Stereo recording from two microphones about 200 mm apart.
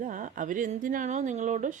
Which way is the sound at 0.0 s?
40° right (ahead or behind).